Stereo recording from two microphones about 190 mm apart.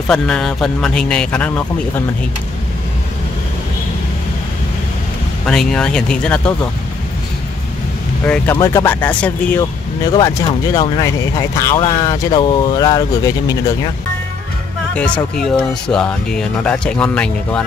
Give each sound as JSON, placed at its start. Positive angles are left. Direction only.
{"t": 0.1, "sound": "speech", "side_deg": 5}
{"t": 5.5, "sound": "speech", "side_deg": 5}
{"t": 8.3, "sound": "speech", "side_deg": 15}
{"t": 10.1, "sound": "speech", "side_deg": 20}
{"t": 15.0, "sound": "speech", "side_deg": 5}